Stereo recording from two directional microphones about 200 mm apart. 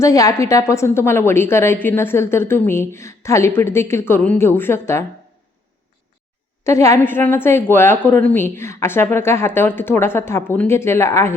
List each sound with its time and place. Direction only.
0.0 s a woman's voice: 15° left (ahead or behind)
6.7 s a woman's voice: 15° left (ahead or behind)